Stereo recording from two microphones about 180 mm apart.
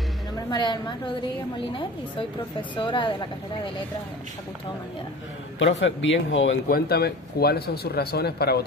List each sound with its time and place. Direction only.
0.5 s a woman's voice: 25° left (ahead or behind)
2.7 s a woman's voice: 25° left (ahead or behind)
5.6 s speech: 90° left
6.7 s speech: 60° left (ahead or behind)